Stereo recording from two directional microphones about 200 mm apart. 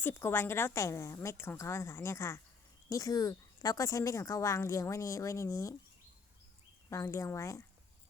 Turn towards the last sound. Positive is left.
turn(degrees=15)  # may be behind; listen again after turning